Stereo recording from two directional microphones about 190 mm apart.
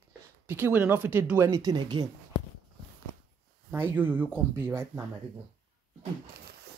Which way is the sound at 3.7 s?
10° right (ahead or behind).